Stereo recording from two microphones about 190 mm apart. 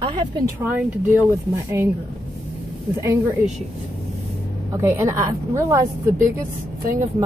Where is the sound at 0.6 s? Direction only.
10° right (ahead or behind).